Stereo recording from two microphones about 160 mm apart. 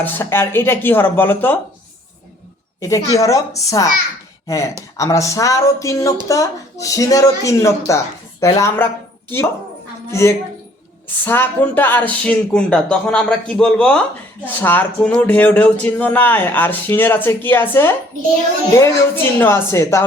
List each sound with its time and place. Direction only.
0.0 s speech: 15° left (ahead or behind)
2.8 s speech: 20° left (ahead or behind)
10.1 s speech: 15° left (ahead or behind)